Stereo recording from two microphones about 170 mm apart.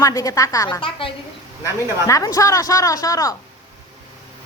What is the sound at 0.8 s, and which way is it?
Speech, 30° left (ahead or behind).